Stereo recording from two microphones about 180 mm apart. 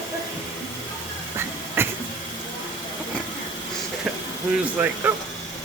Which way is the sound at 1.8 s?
15° right (ahead or behind).